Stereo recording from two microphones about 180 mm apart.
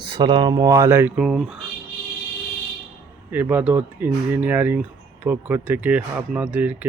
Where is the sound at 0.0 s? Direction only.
25° right (ahead or behind); by 1.5 s 5° right (ahead or behind).